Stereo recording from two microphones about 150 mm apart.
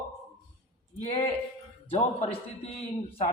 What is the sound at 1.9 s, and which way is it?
A man's voice, 45° left (ahead or behind).